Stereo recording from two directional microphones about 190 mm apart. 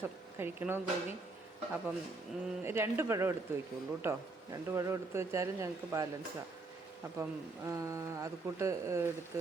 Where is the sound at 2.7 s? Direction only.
15° right (ahead or behind).